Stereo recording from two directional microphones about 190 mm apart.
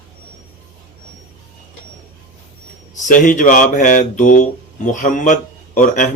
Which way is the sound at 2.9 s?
40° left (ahead or behind).